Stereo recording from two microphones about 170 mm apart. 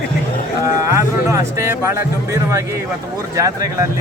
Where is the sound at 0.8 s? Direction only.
20° right (ahead or behind).